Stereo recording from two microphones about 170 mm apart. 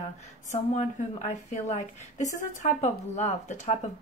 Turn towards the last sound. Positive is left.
turn(degrees=40)  # may be behind; listen again after turning